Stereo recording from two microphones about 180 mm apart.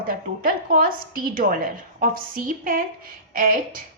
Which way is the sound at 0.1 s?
50° right (ahead or behind).